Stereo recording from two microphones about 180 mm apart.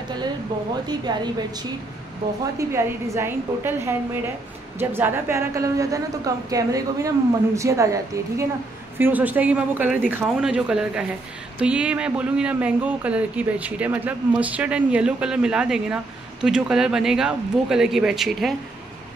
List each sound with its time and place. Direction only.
0.8 s a woman's voice: 25° right (ahead or behind)
2.7 s a woman's voice: 15° right (ahead or behind)